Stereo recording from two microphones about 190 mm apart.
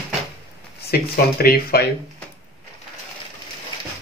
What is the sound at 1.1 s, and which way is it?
Speech, 50° left (ahead or behind).